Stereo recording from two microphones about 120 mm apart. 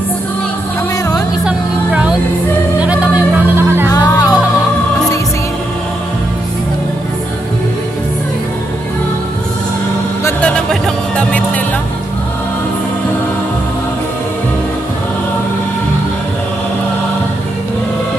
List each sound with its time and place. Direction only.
1.4 s music: 10° right (ahead or behind)
3.9 s music: 30° left (ahead or behind)
10.4 s music: 10° left (ahead or behind)